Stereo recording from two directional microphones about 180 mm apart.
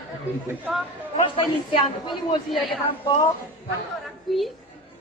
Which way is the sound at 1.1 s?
30° left (ahead or behind).